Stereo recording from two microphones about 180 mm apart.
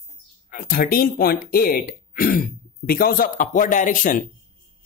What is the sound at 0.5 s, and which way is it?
Speech, 55° left (ahead or behind).